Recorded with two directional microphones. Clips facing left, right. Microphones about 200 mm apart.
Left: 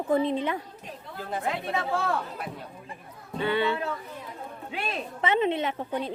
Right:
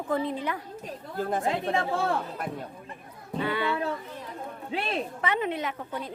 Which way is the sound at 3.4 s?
25° left (ahead or behind).